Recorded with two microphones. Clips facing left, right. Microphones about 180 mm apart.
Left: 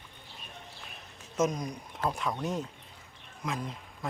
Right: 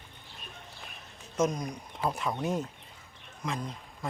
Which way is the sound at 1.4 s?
Centre (ahead or behind).